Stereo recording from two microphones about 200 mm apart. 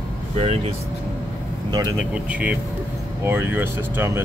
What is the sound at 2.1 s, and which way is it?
Speech, 5° right (ahead or behind).